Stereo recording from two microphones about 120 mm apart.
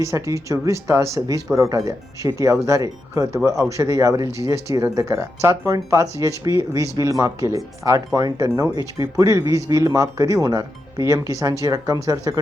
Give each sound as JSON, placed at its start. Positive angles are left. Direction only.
{"t": 0.0, "sound": "speech", "side_deg": -25}